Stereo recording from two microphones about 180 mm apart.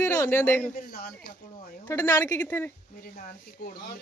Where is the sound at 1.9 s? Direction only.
10° left (ahead or behind).